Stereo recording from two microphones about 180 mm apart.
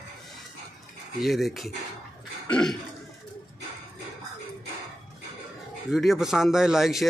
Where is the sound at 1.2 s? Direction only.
Centre (ahead or behind).